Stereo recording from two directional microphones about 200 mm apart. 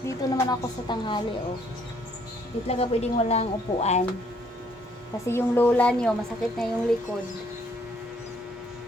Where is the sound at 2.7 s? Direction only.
30° left (ahead or behind).